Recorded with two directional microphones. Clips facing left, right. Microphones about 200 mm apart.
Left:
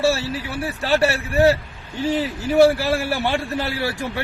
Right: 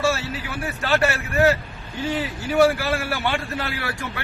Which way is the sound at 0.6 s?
35° left (ahead or behind).